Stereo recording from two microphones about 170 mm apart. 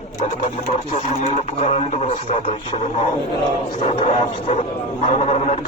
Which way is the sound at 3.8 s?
35° left (ahead or behind).